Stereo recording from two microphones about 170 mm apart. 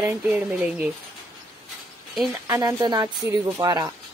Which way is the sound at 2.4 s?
20° right (ahead or behind).